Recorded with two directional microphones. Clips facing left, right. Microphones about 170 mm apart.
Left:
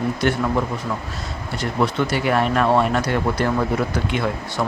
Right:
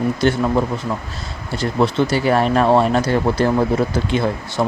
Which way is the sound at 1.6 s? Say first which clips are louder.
Right 4 dB; 30° right (ahead or behind).